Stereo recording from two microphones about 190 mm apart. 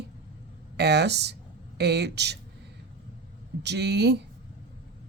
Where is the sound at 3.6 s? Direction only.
60° right (ahead or behind).